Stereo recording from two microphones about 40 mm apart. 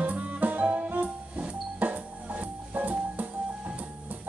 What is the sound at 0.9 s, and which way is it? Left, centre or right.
Music, right.